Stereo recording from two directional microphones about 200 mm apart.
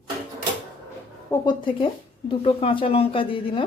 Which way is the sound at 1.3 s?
25° left (ahead or behind).